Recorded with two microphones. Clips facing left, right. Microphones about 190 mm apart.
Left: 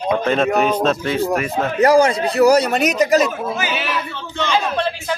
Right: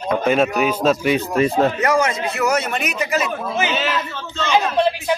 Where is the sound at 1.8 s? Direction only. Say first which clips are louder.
Left 5 dB; 35° left (ahead or behind).